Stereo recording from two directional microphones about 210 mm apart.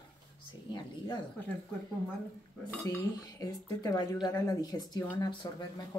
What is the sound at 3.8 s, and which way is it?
Speech, 15° left (ahead or behind).